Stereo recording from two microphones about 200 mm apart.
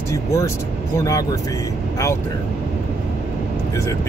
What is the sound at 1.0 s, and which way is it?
Speech, 15° left (ahead or behind).